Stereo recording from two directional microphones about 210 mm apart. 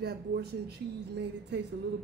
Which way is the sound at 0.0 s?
50° right (ahead or behind).